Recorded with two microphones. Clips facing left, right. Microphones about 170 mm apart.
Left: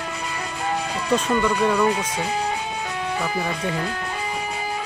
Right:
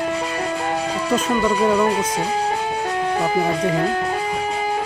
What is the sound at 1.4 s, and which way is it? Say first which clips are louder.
Speech: right 3 dB; 30° right (ahead or behind).